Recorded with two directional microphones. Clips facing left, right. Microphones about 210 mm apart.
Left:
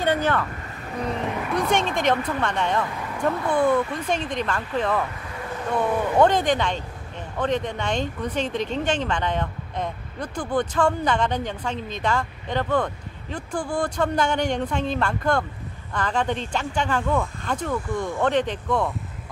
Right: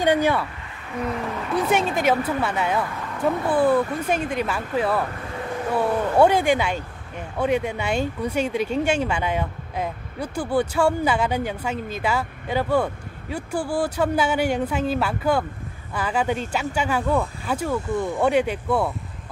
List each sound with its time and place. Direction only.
0.0 s speech: 10° right (ahead or behind)
1.5 s speech: 5° right (ahead or behind)